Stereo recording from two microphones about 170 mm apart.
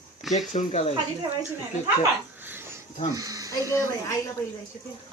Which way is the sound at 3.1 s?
20° right (ahead or behind).